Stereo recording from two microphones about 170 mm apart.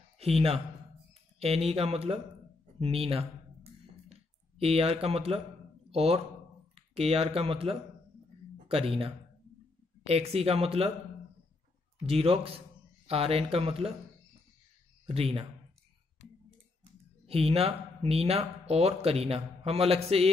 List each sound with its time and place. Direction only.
0.2 s a man's voice: 35° right (ahead or behind)
3.8 s a sound: 35° right (ahead or behind)
5.9 s speech: 35° right (ahead or behind)
12.0 s speech: 35° right (ahead or behind)
15.0 s speech: 35° right (ahead or behind)
17.3 s speech: 35° right (ahead or behind)